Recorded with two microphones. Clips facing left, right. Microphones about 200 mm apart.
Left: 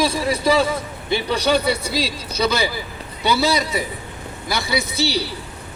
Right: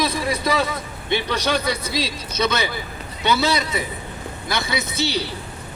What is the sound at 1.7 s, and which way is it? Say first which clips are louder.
A man's voice: left 3 dB; 30° left (ahead or behind).